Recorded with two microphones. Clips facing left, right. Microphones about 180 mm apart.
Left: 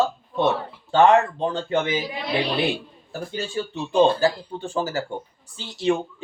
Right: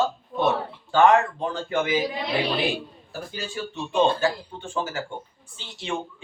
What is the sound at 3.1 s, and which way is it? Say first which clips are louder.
Speech: left 5 dB; 25° left (ahead or behind).